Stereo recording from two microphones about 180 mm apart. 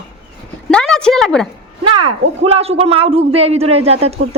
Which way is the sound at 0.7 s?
5° left (ahead or behind).